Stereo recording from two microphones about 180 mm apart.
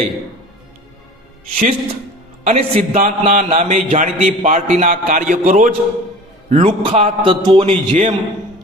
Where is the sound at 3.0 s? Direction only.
45° right (ahead or behind).